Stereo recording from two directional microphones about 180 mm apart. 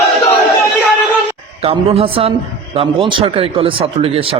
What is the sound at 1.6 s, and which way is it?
A man's voice, 30° right (ahead or behind).